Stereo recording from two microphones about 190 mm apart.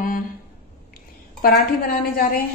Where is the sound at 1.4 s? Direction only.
50° left (ahead or behind).